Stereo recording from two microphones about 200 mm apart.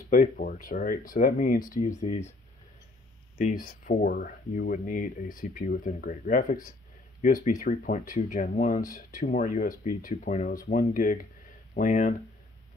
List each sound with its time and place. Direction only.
0.1 s speech: 40° left (ahead or behind)
3.3 s speech: 40° left (ahead or behind)